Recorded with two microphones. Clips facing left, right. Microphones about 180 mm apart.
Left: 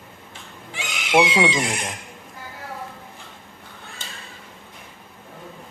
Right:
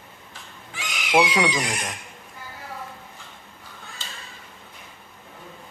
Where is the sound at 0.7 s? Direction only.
25° left (ahead or behind).